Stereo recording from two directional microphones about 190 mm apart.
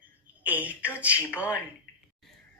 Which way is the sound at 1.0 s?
5° right (ahead or behind).